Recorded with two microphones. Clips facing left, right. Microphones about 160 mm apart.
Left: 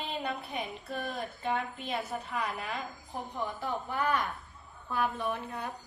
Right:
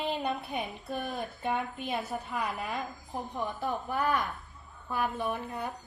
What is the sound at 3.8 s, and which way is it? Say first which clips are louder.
Speech: even; centre (ahead or behind).